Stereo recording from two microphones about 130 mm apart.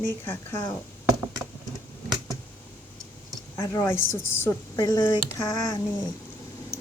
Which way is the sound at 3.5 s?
25° left (ahead or behind).